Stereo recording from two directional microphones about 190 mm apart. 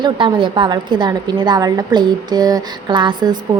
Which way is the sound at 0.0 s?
25° right (ahead or behind).